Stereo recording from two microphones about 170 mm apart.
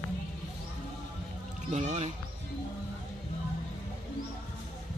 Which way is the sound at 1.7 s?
45° right (ahead or behind).